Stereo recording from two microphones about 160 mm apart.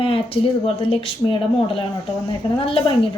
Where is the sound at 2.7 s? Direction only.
35° left (ahead or behind).